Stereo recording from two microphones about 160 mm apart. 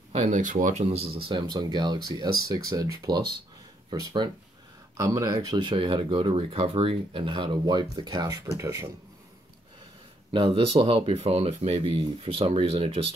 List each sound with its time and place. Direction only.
0.1 s speech: 45° right (ahead or behind); by 8.8 s 20° right (ahead or behind)
10.3 s speech: 35° right (ahead or behind)